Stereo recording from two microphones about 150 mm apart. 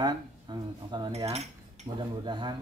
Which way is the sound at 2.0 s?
30° right (ahead or behind).